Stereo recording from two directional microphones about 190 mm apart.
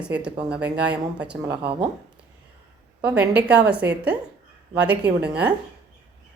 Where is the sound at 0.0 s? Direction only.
5° right (ahead or behind).